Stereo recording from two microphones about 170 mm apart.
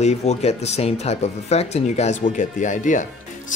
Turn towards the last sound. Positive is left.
turn(degrees=50)  # may be behind; listen again after turning